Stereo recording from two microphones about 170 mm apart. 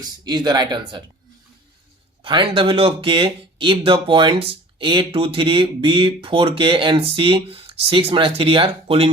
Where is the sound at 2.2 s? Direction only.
30° right (ahead or behind).